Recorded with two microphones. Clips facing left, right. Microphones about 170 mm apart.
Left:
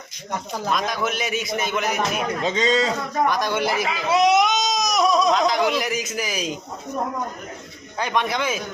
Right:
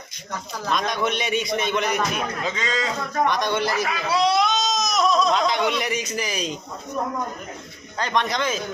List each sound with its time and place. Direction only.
0.7 s a man's voice: centre (ahead or behind)
2.4 s a man's voice: 25° left (ahead or behind)
3.2 s a man's voice: 5° left (ahead or behind)
3.8 s baby cry: 20° left (ahead or behind)
5.3 s a man's voice: centre (ahead or behind)
7.9 s speech: 10° left (ahead or behind)